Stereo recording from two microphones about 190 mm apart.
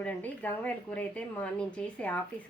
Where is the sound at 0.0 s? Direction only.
10° left (ahead or behind).